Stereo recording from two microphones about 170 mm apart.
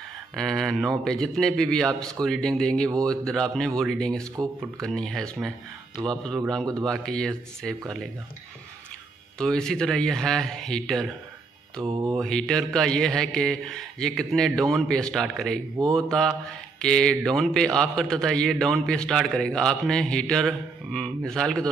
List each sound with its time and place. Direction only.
0.4 s a man's voice: centre (ahead or behind)
9.4 s a man's voice: 5° left (ahead or behind)
11.9 s mantra: 30° right (ahead or behind)
12.2 s a man's voice: 5° left (ahead or behind)